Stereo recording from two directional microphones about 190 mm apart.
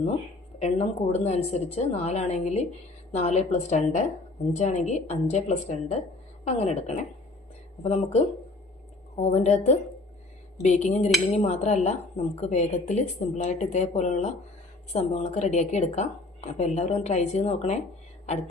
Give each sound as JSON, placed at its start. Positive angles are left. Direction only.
{"t": 0.6, "sound": "a woman's voice", "side_deg": 35}